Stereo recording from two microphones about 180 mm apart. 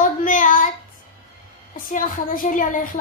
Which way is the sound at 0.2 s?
45° left (ahead or behind).